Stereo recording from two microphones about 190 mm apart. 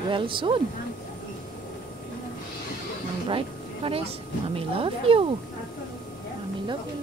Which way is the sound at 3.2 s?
30° right (ahead or behind).